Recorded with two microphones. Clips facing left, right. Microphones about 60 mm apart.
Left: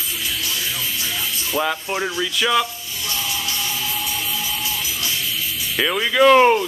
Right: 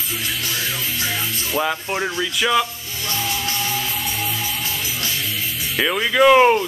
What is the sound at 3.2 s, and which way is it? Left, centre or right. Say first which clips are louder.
Music: right 3 dB; right.